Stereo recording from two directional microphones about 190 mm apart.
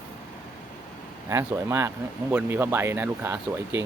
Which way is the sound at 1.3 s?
15° right (ahead or behind).